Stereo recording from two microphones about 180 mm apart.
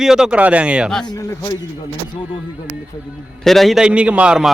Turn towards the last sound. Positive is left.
turn(degrees=-5)  # may be behind; listen again after turning